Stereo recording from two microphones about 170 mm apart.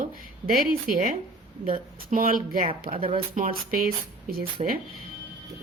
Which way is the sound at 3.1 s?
55° right (ahead or behind).